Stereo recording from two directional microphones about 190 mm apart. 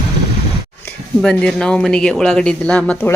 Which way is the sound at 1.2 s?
5° left (ahead or behind).